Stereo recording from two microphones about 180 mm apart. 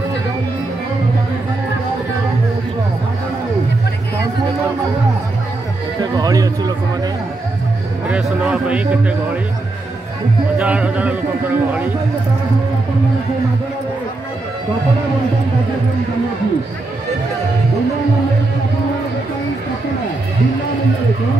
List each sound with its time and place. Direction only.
6.1 s speech: 20° right (ahead or behind)
8.1 s a man's voice: 5° right (ahead or behind)
10.6 s a man's voice: 5° right (ahead or behind)